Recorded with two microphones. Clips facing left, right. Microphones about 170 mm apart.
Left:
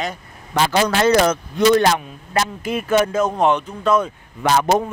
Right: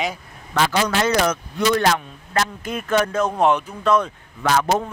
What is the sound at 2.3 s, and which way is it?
Speech, 10° left (ahead or behind).